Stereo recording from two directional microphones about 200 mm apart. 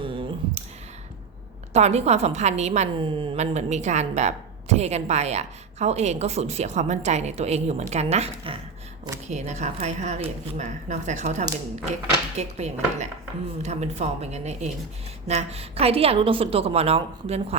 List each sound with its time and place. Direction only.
0.0 s clicking: 25° right (ahead or behind)
1.7 s a woman's voice: 35° right (ahead or behind)